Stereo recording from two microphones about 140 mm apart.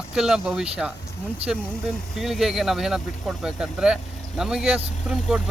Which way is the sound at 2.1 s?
Centre (ahead or behind).